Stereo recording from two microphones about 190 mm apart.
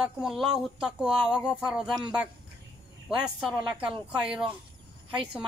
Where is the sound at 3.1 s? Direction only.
5° right (ahead or behind).